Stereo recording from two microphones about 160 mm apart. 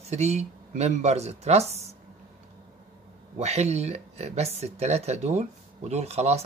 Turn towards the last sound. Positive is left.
turn(degrees=-40)  # may be behind; listen again after turning